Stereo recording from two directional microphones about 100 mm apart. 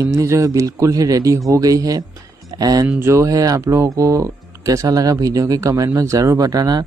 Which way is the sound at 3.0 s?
30° right (ahead or behind).